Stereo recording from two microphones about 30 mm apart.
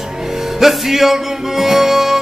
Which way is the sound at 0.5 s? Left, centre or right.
Centre.